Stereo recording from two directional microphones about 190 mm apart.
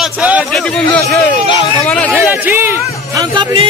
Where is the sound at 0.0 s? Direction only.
5° right (ahead or behind).